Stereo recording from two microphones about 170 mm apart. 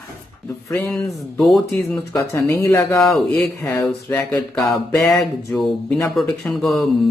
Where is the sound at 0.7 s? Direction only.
15° left (ahead or behind).